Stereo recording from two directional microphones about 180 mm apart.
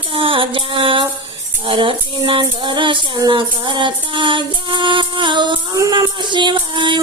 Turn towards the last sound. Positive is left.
turn(degrees=-25)  # may be behind; listen again after turning